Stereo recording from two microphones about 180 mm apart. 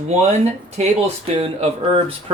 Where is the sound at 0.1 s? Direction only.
35° right (ahead or behind).